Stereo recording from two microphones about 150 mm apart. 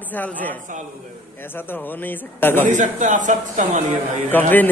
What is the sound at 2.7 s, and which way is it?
Speech, 55° right (ahead or behind).